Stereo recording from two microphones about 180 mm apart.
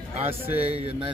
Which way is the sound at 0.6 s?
35° right (ahead or behind).